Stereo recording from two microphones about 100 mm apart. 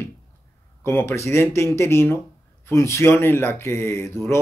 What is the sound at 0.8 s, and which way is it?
Speech, 25° left (ahead or behind).